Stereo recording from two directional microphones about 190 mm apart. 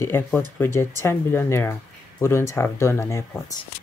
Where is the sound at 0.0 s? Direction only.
10° left (ahead or behind).